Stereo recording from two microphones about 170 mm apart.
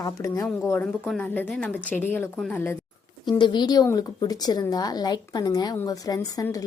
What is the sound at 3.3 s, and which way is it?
A woman's voice, 25° left (ahead or behind).